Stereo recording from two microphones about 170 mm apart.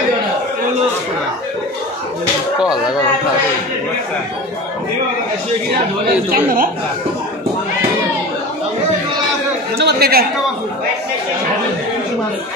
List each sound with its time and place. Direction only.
6.3 s speech: 55° right (ahead or behind)
9.8 s a man's voice: 70° right (ahead or behind)